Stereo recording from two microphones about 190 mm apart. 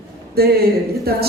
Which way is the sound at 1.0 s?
55° right (ahead or behind).